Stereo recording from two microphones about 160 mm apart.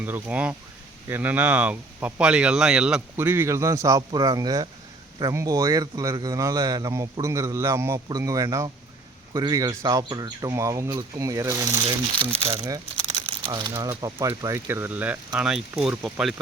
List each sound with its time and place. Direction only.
0.0 s a man's voice: 10° right (ahead or behind)
13.2 s crumpling: 30° right (ahead or behind)
13.7 s speech: 15° right (ahead or behind)